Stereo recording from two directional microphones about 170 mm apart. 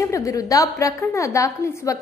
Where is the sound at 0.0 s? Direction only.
15° left (ahead or behind).